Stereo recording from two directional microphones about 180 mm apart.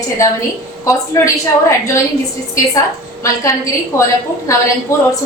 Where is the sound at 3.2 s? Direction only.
15° left (ahead or behind).